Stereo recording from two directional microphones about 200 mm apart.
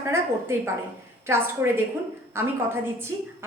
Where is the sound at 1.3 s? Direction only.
10° right (ahead or behind).